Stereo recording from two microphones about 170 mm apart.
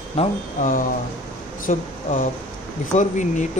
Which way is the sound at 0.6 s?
50° left (ahead or behind).